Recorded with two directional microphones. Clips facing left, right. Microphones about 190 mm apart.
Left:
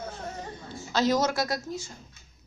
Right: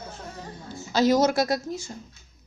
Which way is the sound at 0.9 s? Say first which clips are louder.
Right 4 dB; 5° right (ahead or behind).